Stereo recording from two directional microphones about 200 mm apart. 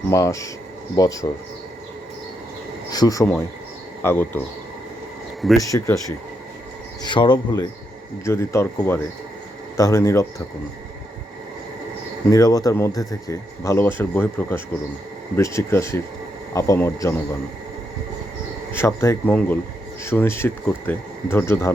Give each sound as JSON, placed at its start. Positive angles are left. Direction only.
{"t": 0.1, "sound": "speech", "side_deg": 15}
{"t": 2.9, "sound": "speech", "side_deg": 20}
{"t": 5.4, "sound": "speech", "side_deg": 0}
{"t": 5.6, "sound": "speech", "side_deg": 15}
{"t": 7.1, "sound": "speech", "side_deg": 25}
{"t": 12.3, "sound": "speech", "side_deg": 20}
{"t": 18.7, "sound": "speech", "side_deg": 10}